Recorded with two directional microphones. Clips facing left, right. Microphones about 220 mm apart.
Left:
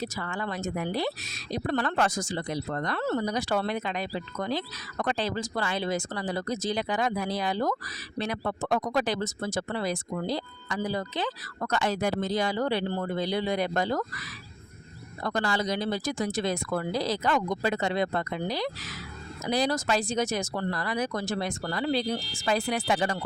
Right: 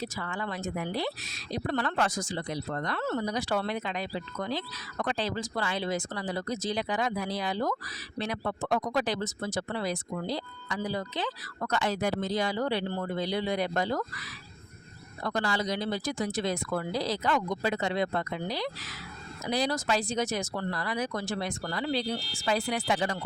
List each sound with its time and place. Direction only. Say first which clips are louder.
0.0 s speech: left 2 dB; 45° left (ahead or behind)
15.2 s speech: left 2 dB; 45° left (ahead or behind)